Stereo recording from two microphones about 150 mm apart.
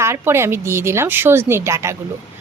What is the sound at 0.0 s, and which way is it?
A woman's voice, 15° right (ahead or behind).